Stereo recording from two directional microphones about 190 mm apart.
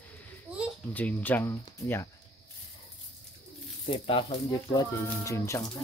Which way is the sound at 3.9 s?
25° left (ahead or behind).